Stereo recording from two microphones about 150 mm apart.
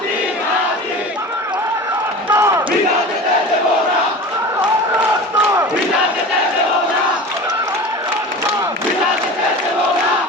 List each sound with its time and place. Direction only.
2.3 s crowd: 20° right (ahead or behind)